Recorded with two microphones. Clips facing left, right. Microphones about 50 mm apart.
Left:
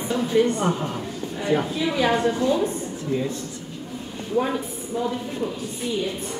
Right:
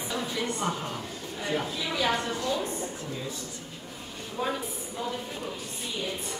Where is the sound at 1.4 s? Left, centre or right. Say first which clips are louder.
Left 8 dB; left.